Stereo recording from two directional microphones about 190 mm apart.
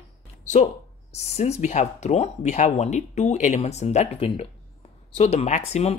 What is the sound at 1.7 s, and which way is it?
Speech, 40° left (ahead or behind).